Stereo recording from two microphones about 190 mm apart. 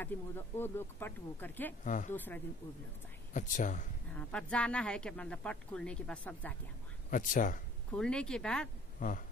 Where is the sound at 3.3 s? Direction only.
40° left (ahead or behind).